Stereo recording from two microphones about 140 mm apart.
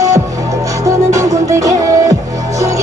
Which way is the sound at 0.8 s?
20° right (ahead or behind).